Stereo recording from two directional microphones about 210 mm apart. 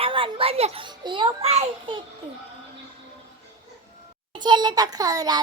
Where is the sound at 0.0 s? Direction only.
25° right (ahead or behind).